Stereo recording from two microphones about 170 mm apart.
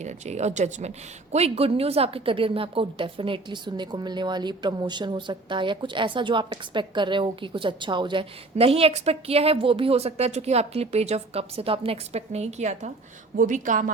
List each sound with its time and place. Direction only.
0.0 s a woman's voice: 40° right (ahead or behind)